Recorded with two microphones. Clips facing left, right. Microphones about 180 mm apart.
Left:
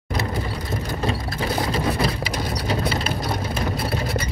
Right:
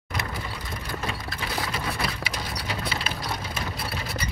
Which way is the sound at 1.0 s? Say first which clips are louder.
Left 10 dB; 35° left (ahead or behind).